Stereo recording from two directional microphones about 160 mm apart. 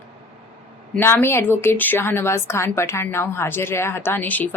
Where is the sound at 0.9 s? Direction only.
15° left (ahead or behind).